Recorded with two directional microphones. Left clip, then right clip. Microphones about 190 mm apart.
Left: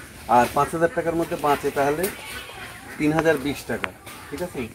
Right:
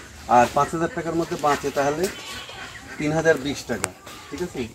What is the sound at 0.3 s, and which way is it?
Speech, 15° right (ahead or behind).